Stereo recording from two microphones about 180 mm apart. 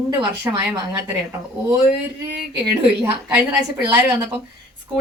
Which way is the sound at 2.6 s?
20° right (ahead or behind).